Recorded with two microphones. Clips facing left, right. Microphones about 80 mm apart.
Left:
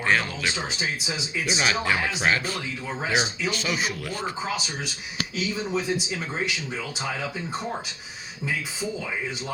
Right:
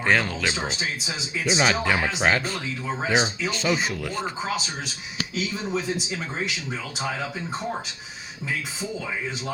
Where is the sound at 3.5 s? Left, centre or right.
Right.